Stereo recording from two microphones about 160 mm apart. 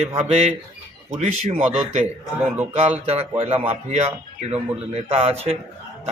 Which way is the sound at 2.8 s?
40° right (ahead or behind).